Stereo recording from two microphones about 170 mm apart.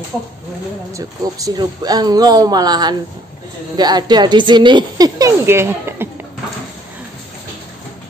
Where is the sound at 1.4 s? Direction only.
25° right (ahead or behind).